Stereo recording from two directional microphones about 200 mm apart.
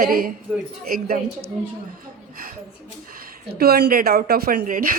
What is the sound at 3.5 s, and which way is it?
Speech, 50° right (ahead or behind).